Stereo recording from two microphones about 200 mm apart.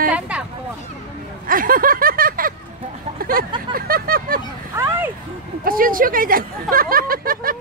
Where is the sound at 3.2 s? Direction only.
45° right (ahead or behind).